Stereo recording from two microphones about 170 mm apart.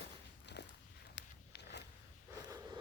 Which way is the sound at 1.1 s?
80° left.